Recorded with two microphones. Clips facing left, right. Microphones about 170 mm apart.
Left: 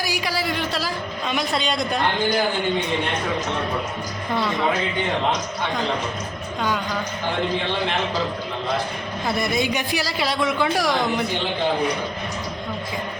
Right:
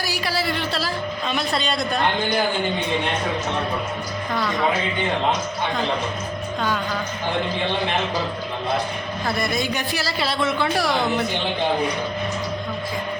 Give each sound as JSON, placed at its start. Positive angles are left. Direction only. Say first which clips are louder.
{"t": 0.0, "sound": "speech", "louder": "even", "side_deg": 15}
{"t": 9.2, "sound": "speech", "louder": "left 2 dB", "side_deg": 20}